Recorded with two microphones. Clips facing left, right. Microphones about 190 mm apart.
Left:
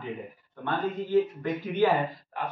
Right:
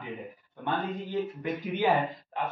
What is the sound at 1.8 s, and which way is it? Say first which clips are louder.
Speech: left 3 dB; 15° right (ahead or behind).